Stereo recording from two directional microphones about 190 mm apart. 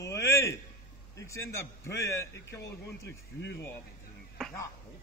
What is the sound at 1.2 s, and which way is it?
A man's voice, 15° left (ahead or behind).